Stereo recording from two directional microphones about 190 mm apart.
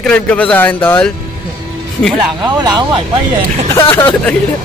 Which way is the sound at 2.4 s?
20° right (ahead or behind).